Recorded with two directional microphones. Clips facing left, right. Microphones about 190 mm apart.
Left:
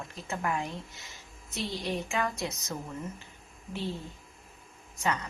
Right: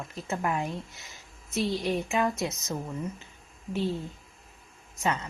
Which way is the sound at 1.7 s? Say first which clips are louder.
Right 3 dB; 20° right (ahead or behind).